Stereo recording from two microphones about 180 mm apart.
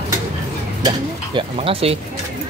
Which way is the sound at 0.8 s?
30° right (ahead or behind).